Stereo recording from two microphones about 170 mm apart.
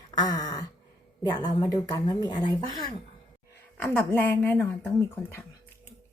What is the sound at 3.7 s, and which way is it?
Speech, 10° left (ahead or behind).